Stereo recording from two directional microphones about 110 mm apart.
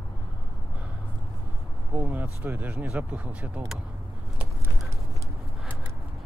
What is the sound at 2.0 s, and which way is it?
Speech, 15° right (ahead or behind).